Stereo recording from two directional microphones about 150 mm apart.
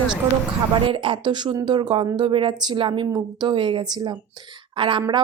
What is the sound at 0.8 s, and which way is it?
A woman's voice, 35° right (ahead or behind).